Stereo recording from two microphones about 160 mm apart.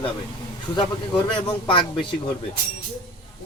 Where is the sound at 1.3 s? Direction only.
30° left (ahead or behind).